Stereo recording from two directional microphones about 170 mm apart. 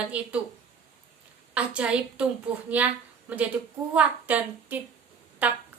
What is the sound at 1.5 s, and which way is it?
A woman's voice, 5° right (ahead or behind).